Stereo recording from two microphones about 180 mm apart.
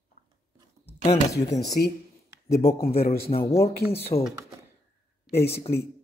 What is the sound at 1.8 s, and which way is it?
Speech, 55° left (ahead or behind).